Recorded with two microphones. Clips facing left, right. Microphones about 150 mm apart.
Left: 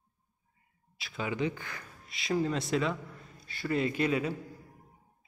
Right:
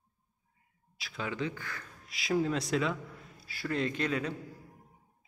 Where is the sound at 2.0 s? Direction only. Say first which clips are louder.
Even; centre (ahead or behind).